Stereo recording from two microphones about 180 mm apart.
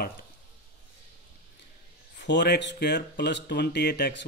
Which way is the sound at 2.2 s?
70° left (ahead or behind).